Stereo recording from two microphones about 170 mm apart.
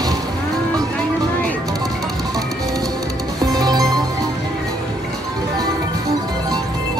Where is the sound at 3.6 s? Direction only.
25° right (ahead or behind).